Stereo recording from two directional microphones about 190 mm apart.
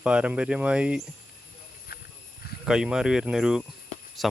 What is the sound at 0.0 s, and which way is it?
Speech, 5° right (ahead or behind).